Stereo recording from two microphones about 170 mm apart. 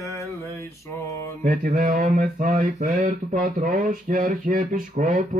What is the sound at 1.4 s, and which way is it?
Mantra, 55° right (ahead or behind).